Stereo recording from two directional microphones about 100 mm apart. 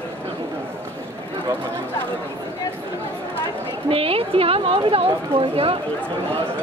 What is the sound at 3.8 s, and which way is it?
Speech, 70° right (ahead or behind).